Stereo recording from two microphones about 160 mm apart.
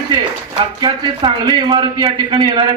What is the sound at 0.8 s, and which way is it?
A man's voice, 30° right (ahead or behind).